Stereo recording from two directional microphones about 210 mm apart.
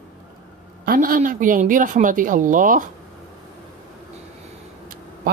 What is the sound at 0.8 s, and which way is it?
Speech, 40° right (ahead or behind).